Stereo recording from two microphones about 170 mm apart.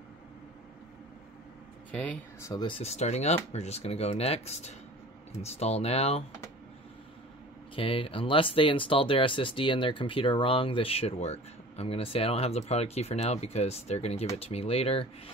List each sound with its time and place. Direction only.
1.9 s speech: 10° left (ahead or behind)
2.8 s speech: 40° left (ahead or behind)
7.7 s speech: 30° left (ahead or behind)